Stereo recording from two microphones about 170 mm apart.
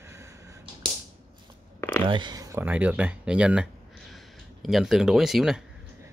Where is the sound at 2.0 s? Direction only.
25° right (ahead or behind).